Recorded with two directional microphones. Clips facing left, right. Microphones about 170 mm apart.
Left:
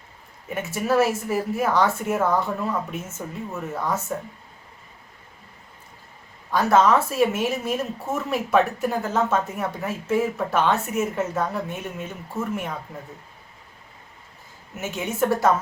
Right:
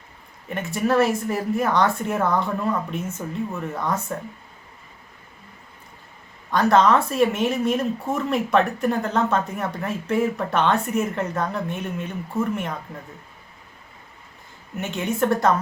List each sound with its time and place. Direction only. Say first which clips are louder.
0.4 s speech: right 2 dB; 5° left (ahead or behind)
6.5 s speech: right 1 dB; 5° left (ahead or behind)
14.8 s speech: right 1 dB; 5° left (ahead or behind)